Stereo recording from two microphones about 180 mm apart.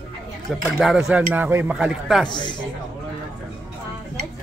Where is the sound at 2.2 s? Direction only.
25° left (ahead or behind).